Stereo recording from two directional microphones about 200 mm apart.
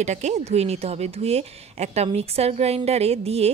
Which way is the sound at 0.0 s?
35° right (ahead or behind).